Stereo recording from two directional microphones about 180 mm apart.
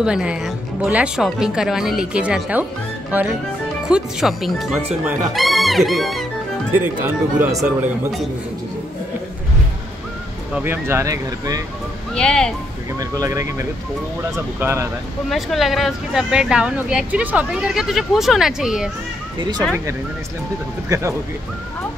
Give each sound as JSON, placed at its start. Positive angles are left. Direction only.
{"t": 0.0, "sound": "speech", "side_deg": -5}
{"t": 10.5, "sound": "speech", "side_deg": -10}
{"t": 12.1, "sound": "speech", "side_deg": 5}
{"t": 13.0, "sound": "speech", "side_deg": -20}
{"t": 15.2, "sound": "speech", "side_deg": 0}
{"t": 20.9, "sound": "speech", "side_deg": -20}